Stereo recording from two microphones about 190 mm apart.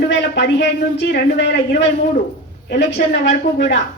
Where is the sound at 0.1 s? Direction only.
65° left (ahead or behind).